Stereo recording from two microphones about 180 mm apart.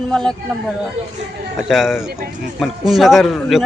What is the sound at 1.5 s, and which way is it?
A man's voice, centre (ahead or behind).